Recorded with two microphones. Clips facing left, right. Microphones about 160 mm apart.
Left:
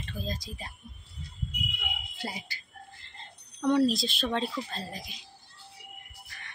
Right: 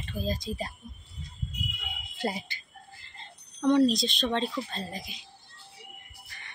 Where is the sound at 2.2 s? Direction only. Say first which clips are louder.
Right 7 dB; 60° right (ahead or behind).